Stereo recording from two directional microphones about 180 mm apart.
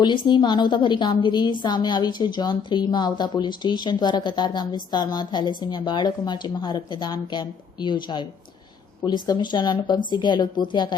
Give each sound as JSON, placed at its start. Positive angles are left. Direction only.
{"t": 0.0, "sound": "a woman's voice", "side_deg": 25}